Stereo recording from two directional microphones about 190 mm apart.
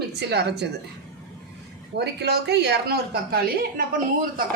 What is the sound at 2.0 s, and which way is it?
A woman's voice, 60° right (ahead or behind).